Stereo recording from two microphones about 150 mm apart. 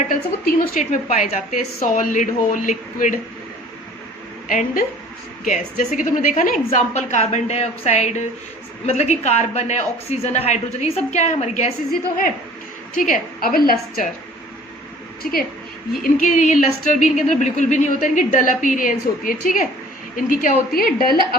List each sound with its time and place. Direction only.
0.1 s speech: 70° left (ahead or behind)
4.4 s a woman's voice: 65° left (ahead or behind)
13.0 s a woman's voice: 70° left (ahead or behind)
15.2 s a woman's voice: 80° left
16.2 s a woman's voice: 55° left (ahead or behind); by 21.2 s 80° left